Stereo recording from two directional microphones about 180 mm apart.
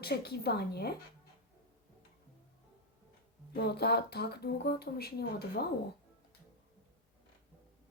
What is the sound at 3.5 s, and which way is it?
Speech, 60° left (ahead or behind).